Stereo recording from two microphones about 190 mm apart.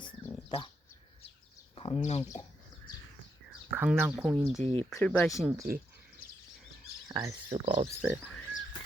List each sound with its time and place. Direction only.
0.4 s speech: 25° left (ahead or behind)
1.7 s speech: 30° left (ahead or behind)
3.7 s speech: 10° right (ahead or behind)
4.6 s speech: 35° right (ahead or behind)
4.9 s speech: 5° left (ahead or behind)
7.1 s speech: 15° right (ahead or behind)
7.5 s speech: 30° right (ahead or behind)
8.0 s speech: centre (ahead or behind)